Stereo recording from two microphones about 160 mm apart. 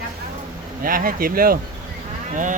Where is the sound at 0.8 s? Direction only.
60° right (ahead or behind).